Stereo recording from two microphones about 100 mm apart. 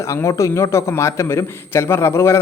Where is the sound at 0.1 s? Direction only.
30° left (ahead or behind).